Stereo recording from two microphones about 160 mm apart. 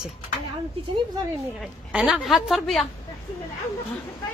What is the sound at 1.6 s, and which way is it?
A woman's voice, 5° right (ahead or behind).